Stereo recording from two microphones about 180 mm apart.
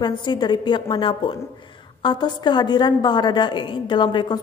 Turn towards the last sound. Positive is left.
turn(degrees=25)  # may be behind; listen again after turning